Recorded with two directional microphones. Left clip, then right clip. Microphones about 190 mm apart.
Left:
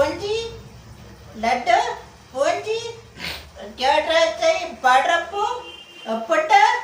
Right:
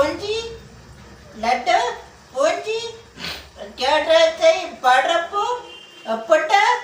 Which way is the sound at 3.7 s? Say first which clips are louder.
Right 2 dB; 15° right (ahead or behind).